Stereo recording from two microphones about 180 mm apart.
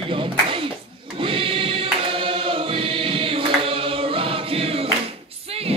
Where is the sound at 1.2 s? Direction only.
30° right (ahead or behind).